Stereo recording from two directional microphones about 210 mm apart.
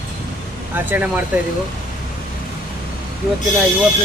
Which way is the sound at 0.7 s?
10° right (ahead or behind).